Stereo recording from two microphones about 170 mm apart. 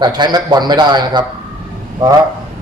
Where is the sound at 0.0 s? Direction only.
25° right (ahead or behind).